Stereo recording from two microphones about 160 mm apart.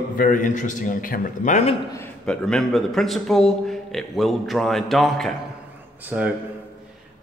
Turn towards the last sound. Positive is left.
turn(degrees=-10)  # may be behind; listen again after turning